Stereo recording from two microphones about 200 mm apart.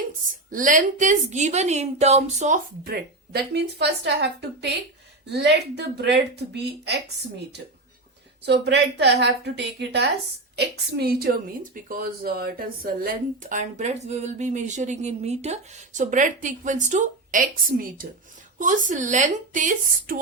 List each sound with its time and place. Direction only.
0.5 s speech: 40° right (ahead or behind)
2.8 s a woman's voice: 50° right (ahead or behind)